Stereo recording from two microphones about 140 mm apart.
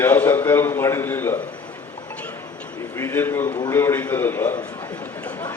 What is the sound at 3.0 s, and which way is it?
A man's voice, 15° left (ahead or behind).